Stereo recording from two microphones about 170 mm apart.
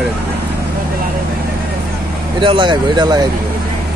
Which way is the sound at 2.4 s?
30° right (ahead or behind).